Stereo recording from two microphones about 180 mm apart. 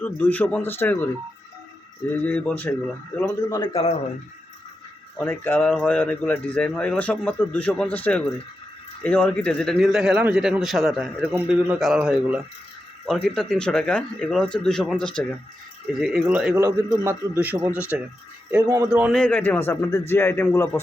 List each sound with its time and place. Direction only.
0.0 s speech: 10° left (ahead or behind)
2.1 s speech: 10° left (ahead or behind)
3.6 s speech: 30° left (ahead or behind)
5.1 s a man's voice: 10° left (ahead or behind); by 16.6 s 5° right (ahead or behind)
16.6 s a man's voice: 15° right (ahead or behind)
18.6 s a man's voice: 20° right (ahead or behind)
19.1 s speech: 10° left (ahead or behind)